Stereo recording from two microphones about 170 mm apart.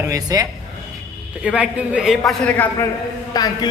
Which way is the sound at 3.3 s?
20° left (ahead or behind).